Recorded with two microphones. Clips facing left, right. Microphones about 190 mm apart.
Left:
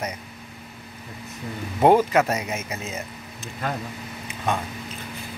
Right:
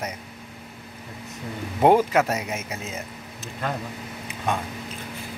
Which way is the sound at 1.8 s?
10° right (ahead or behind).